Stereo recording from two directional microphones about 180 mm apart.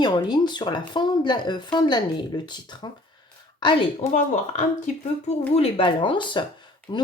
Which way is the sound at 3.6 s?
25° left (ahead or behind).